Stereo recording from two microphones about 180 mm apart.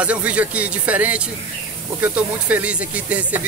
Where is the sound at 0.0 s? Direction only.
5° right (ahead or behind).